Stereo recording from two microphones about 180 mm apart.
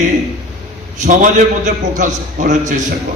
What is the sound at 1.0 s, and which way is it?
A man's voice, 45° right (ahead or behind).